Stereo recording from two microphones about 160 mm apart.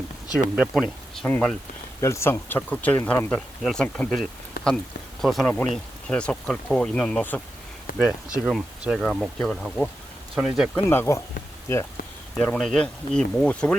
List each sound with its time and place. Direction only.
0.5 s speech: 5° right (ahead or behind)
4.6 s speech: 65° left (ahead or behind)
5.2 s speech: centre (ahead or behind)
8.0 s speech: 5° right (ahead or behind)
10.8 s speech: 15° left (ahead or behind)
12.4 s speech: 5° left (ahead or behind)